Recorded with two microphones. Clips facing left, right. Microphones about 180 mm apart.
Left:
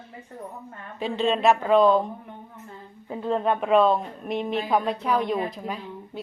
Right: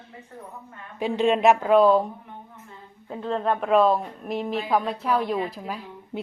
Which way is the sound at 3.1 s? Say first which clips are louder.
Left 1 dB; 10° left (ahead or behind).